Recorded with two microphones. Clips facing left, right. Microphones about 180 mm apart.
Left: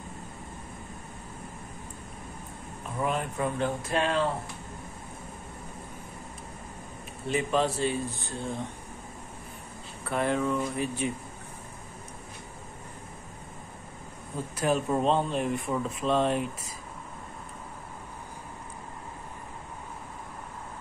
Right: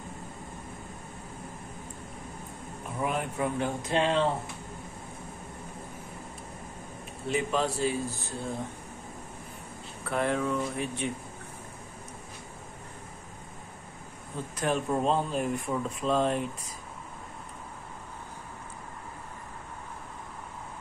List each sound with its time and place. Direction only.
3.0 s speech: 10° right (ahead or behind)
3.9 s speech: 25° right (ahead or behind)
7.2 s speech: centre (ahead or behind)
10.0 s speech: centre (ahead or behind)
14.6 s speech: 5° left (ahead or behind)